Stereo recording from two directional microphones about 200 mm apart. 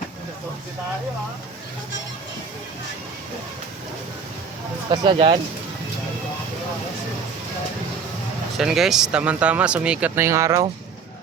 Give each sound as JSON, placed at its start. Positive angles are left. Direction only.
{"t": 4.9, "sound": "speech", "side_deg": -25}
{"t": 8.5, "sound": "speech", "side_deg": 0}